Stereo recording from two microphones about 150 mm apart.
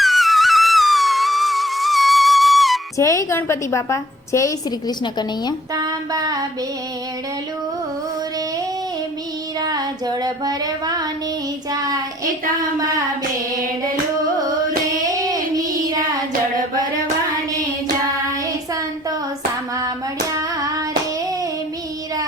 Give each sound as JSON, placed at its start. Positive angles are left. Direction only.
{"t": 0.0, "sound": "music", "side_deg": 0}
{"t": 3.0, "sound": "a woman's voice", "side_deg": 20}
{"t": 5.7, "sound": "a sound", "side_deg": -25}
{"t": 9.6, "sound": "a sound", "side_deg": -25}
{"t": 11.7, "sound": "child singing", "side_deg": -25}
{"t": 15.0, "sound": "child singing", "side_deg": -25}